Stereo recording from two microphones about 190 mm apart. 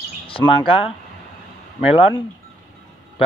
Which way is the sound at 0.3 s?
25° left (ahead or behind).